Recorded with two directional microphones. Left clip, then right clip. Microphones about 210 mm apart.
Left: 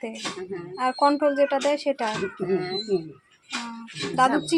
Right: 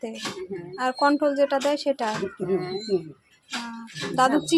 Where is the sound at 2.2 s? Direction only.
5° left (ahead or behind).